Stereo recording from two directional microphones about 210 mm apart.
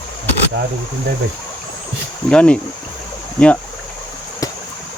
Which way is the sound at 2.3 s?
5° left (ahead or behind).